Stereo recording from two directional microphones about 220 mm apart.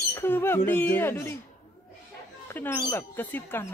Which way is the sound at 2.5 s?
10° left (ahead or behind).